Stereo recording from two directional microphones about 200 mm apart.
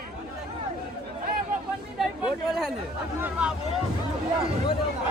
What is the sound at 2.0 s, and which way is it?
Chatter, 5° right (ahead or behind).